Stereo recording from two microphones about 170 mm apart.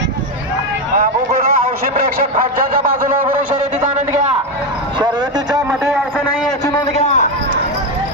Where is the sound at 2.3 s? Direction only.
55° right (ahead or behind).